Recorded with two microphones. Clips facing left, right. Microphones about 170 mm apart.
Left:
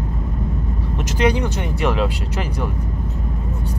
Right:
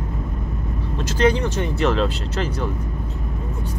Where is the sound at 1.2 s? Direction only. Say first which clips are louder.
Right 1 dB; 15° left (ahead or behind).